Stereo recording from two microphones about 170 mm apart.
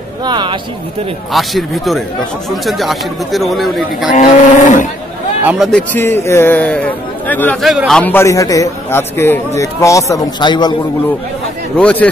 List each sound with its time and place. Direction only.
0.2 s speech: 25° right (ahead or behind)
1.3 s speech: centre (ahead or behind)
4.1 s speech: 45° left (ahead or behind)
5.4 s speech: 5° right (ahead or behind)
5.7 s a man's voice: 10° left (ahead or behind)
7.6 s a man's voice: centre (ahead or behind); by 10.7 s 25° left (ahead or behind)
11.7 s a man's voice: 10° left (ahead or behind)